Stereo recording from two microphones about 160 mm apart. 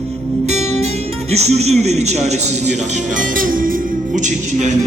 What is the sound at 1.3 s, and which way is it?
Speech, 45° right (ahead or behind).